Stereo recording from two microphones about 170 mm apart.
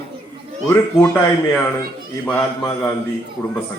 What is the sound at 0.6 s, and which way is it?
Speech, 15° left (ahead or behind).